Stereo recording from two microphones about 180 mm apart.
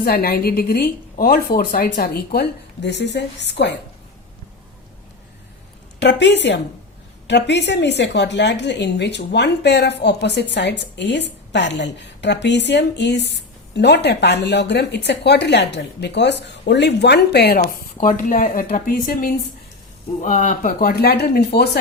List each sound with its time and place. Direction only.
0.0 s speech: 55° left (ahead or behind); by 3.8 s 75° left (ahead or behind)
6.0 s a woman's voice: 80° left
18.0 s speech: 45° left (ahead or behind)